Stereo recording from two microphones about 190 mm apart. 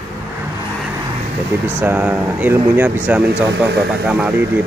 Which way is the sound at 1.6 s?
10° right (ahead or behind).